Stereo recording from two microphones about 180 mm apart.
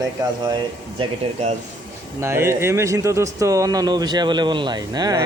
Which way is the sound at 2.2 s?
15° right (ahead or behind).